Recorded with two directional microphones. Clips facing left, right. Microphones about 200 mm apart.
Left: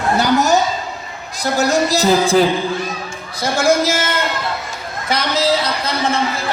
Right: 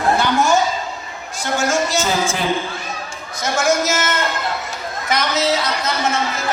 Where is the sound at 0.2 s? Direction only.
40° left (ahead or behind).